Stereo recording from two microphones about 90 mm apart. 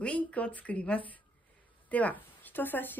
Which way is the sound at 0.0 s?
15° left (ahead or behind).